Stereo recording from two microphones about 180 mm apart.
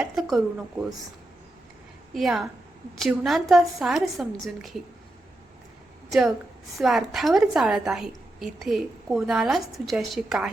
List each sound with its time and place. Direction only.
0.0 s a woman's voice: centre (ahead or behind)
2.1 s a woman's voice: centre (ahead or behind)
6.1 s a woman's voice: centre (ahead or behind)